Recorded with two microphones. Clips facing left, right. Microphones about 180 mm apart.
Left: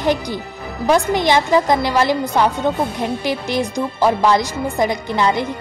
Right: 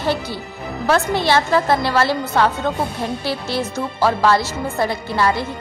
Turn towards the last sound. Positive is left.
turn(degrees=20)  # may be behind; listen again after turning